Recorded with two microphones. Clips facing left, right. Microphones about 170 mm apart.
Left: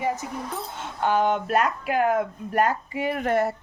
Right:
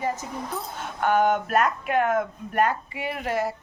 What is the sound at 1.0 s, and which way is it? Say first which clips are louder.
Speech: right 1 dB; 30° left (ahead or behind).